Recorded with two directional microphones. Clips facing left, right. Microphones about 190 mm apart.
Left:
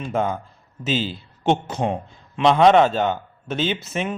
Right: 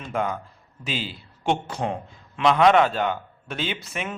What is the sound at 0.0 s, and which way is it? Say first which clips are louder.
A man's voice: left 4 dB; 25° left (ahead or behind).